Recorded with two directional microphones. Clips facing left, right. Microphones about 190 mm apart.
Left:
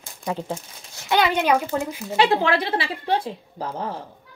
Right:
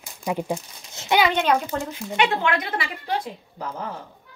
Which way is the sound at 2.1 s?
30° left (ahead or behind).